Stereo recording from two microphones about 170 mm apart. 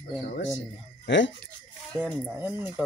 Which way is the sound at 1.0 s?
90° left.